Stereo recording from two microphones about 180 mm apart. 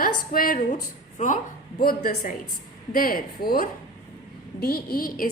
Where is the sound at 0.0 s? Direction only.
50° left (ahead or behind).